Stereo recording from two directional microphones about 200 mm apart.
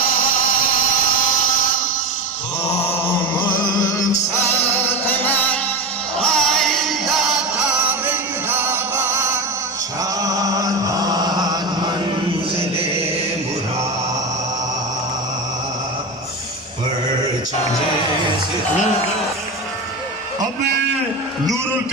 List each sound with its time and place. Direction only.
3.3 s music: 20° left (ahead or behind)
5.0 s music: 10° left (ahead or behind)
7.9 s music: 10° right (ahead or behind)
10.2 s chant: 15° right (ahead or behind)
12.5 s music: 30° right (ahead or behind)